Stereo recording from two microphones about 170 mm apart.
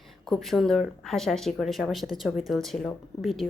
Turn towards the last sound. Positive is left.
turn(degrees=0)  # may be behind; listen again after turning